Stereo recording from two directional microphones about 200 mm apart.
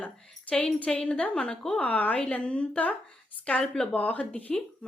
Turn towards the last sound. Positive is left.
turn(degrees=5)  # may be behind; listen again after turning